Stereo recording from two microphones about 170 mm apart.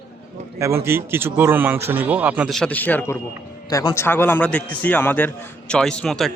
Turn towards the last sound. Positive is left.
turn(degrees=0)  # may be behind; listen again after turning